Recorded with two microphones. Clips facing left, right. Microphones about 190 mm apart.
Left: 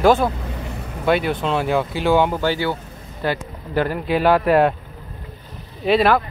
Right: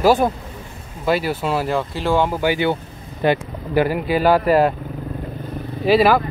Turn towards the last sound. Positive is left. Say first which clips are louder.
# right 2 dB
turn(degrees=-5)  # may be behind; listen again after turning